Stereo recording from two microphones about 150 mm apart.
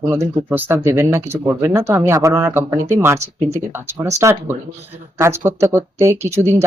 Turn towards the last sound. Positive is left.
turn(degrees=-15)  # may be behind; listen again after turning